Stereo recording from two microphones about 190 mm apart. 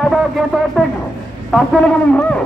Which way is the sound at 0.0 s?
Centre (ahead or behind).